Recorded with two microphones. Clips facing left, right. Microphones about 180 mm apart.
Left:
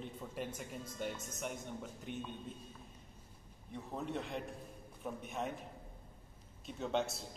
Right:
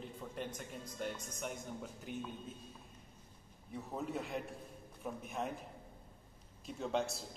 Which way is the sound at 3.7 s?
5° right (ahead or behind).